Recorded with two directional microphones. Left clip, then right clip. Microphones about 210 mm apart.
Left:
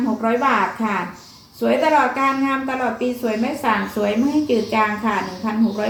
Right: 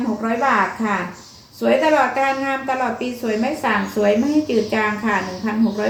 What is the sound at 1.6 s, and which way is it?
Speech, 15° right (ahead or behind).